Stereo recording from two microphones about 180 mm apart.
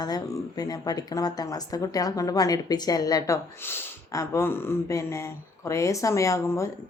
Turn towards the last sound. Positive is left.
turn(degrees=15)  # may be behind; listen again after turning